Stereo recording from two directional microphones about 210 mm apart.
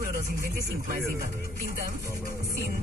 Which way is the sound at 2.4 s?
45° right (ahead or behind).